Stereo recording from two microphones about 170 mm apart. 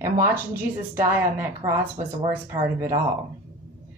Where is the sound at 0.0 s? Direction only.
15° right (ahead or behind).